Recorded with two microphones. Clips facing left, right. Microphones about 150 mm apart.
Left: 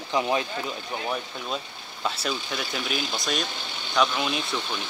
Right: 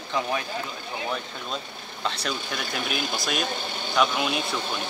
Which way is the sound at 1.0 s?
5° left (ahead or behind).